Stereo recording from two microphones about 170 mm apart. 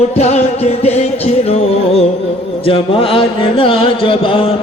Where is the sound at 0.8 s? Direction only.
40° left (ahead or behind).